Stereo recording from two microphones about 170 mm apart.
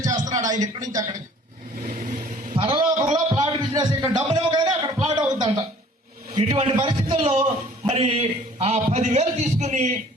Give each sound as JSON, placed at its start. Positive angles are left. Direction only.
{"t": 0.3, "sound": "a man's voice", "side_deg": -20}
{"t": 2.5, "sound": "a sound", "side_deg": -35}
{"t": 6.3, "sound": "a man's voice", "side_deg": -30}